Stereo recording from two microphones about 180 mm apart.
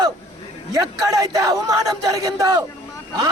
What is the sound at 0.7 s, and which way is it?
A man's voice, 20° right (ahead or behind).